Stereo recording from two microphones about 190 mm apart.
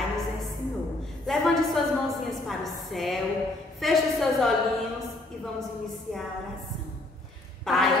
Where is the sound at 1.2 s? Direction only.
Centre (ahead or behind).